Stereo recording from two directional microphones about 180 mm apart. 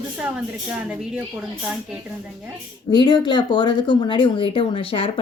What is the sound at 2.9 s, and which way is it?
Speech, 25° left (ahead or behind).